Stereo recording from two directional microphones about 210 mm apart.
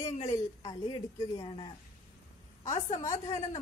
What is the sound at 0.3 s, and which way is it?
A woman's voice, 15° left (ahead or behind).